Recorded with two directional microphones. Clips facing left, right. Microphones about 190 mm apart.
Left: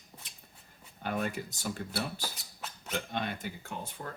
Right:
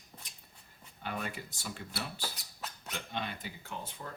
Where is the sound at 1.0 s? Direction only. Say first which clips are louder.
Left 6 dB; 45° left (ahead or behind).